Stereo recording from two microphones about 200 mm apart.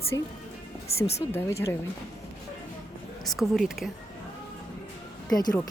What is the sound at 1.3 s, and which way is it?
Speech, 10° left (ahead or behind).